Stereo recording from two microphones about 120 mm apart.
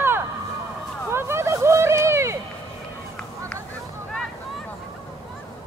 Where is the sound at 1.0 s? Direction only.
20° right (ahead or behind).